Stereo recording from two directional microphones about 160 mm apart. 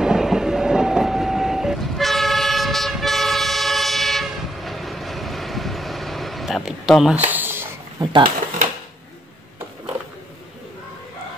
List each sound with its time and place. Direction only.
0.0 s train: 5° right (ahead or behind)
7.2 s a sound: 10° right (ahead or behind)
8.0 s speech: 30° right (ahead or behind)